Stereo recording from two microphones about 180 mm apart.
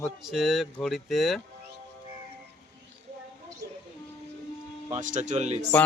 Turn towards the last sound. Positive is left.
turn(degrees=-40)  # may be behind; listen again after turning